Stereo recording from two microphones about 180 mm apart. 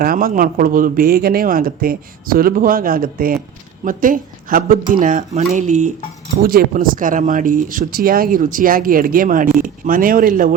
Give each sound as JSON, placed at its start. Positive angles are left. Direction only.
{"t": 0.0, "sound": "speech", "side_deg": -55}
{"t": 6.4, "sound": "speech", "side_deg": -55}